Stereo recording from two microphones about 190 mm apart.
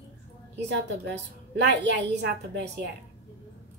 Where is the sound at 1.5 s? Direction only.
65° right (ahead or behind).